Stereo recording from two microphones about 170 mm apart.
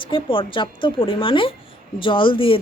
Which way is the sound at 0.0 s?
30° left (ahead or behind).